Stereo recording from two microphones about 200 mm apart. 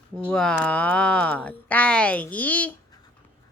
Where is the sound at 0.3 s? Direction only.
5° left (ahead or behind).